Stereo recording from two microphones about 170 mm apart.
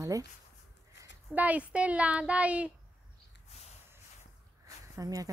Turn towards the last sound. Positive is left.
turn(degrees=-20)  # may be behind; listen again after turning